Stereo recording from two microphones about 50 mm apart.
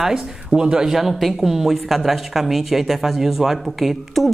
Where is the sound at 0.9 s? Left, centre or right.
Centre.